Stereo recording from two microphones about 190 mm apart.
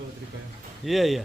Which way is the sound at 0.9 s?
Centre (ahead or behind).